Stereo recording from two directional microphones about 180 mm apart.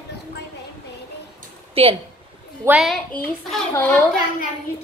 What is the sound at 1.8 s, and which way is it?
Speech, 30° right (ahead or behind).